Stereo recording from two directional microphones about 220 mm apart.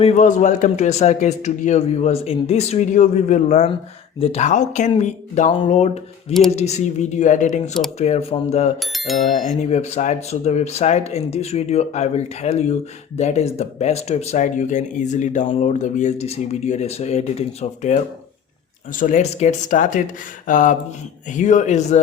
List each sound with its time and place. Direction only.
0.0 s a man's voice: 35° left (ahead or behind)
8.8 s speech: centre (ahead or behind)
9.3 s a man's voice: 30° left (ahead or behind)